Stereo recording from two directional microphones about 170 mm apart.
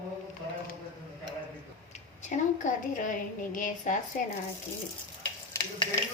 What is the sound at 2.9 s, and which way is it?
A woman's voice, 50° left (ahead or behind).